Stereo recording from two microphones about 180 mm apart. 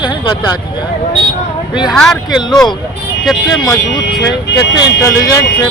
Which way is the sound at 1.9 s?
Centre (ahead or behind).